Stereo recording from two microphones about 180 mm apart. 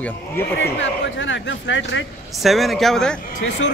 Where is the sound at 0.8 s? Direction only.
90° left.